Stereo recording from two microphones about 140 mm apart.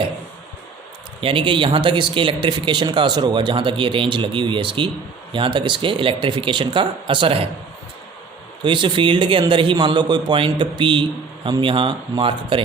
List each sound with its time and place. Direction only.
1.2 s speech: 40° right (ahead or behind)
8.6 s speech: 35° right (ahead or behind)